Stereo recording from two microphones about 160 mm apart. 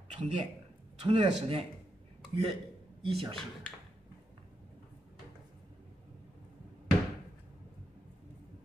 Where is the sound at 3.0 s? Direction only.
35° right (ahead or behind).